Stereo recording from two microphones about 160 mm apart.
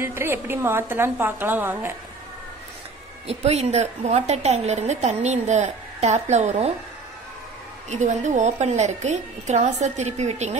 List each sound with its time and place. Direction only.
0.0 s a woman's voice: 15° right (ahead or behind)
3.3 s a woman's voice: 40° right (ahead or behind)
7.9 s a woman's voice: 45° right (ahead or behind)